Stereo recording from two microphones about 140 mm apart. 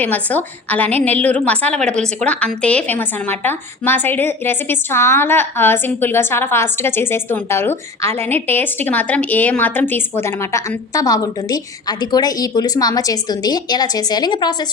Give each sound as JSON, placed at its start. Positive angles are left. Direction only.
{"t": 0.0, "sound": "a woman's voice", "side_deg": 10}